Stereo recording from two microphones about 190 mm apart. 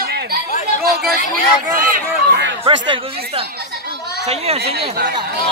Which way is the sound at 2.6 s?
30° right (ahead or behind).